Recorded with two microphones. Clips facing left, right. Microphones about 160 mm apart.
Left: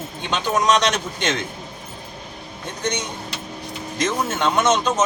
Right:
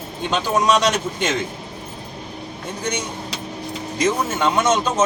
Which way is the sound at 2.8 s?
10° right (ahead or behind).